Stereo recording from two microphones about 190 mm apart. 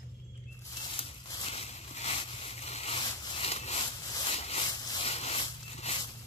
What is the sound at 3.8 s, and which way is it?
Rub, 25° left (ahead or behind).